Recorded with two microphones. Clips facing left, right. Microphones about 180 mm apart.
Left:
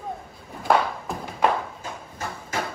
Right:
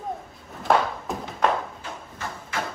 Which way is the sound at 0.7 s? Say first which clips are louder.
Even; centre (ahead or behind).